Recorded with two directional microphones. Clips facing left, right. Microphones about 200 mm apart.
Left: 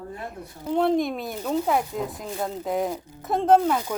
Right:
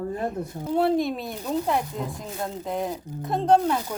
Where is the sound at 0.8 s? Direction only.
5° right (ahead or behind).